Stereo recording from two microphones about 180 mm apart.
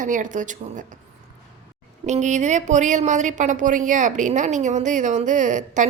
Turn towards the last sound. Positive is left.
turn(degrees=-45)  # may be behind; listen again after turning